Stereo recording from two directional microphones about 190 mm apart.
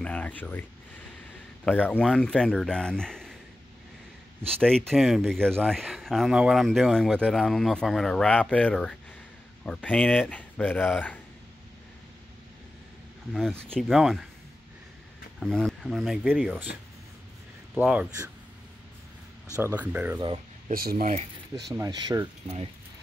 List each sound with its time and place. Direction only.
0.0 s speech: 5° left (ahead or behind)
4.6 s speech: 5° left (ahead or behind)
13.3 s speech: centre (ahead or behind)
15.4 s speech: centre (ahead or behind)
16.7 s speech: 50° left (ahead or behind)
17.7 s speech: 10° right (ahead or behind)
19.5 s speech: 10° right (ahead or behind)
20.2 s a sound: 25° right (ahead or behind)
20.7 s speech: 50° right (ahead or behind)
21.7 s speech: 20° right (ahead or behind)